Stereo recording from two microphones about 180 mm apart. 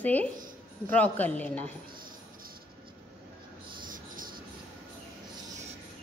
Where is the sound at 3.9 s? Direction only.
50° right (ahead or behind).